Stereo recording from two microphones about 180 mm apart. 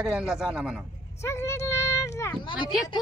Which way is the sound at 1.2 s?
15° left (ahead or behind).